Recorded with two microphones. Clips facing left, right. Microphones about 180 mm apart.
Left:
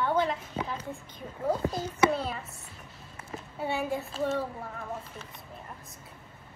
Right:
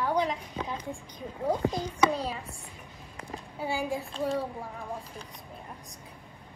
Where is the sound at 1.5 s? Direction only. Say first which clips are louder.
Right 1 dB; 15° right (ahead or behind).